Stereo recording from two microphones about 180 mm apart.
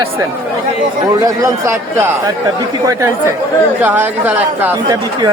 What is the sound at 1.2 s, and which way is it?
Speech, 20° right (ahead or behind).